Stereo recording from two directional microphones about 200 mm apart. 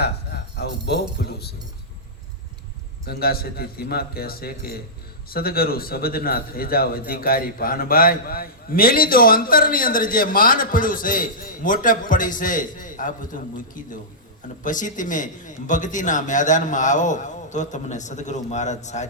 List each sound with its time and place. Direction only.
1.2 s speech: 55° left (ahead or behind)
3.1 s a man's voice: 50° left (ahead or behind)